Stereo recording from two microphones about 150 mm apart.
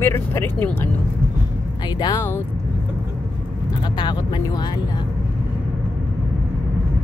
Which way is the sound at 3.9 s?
30° left (ahead or behind).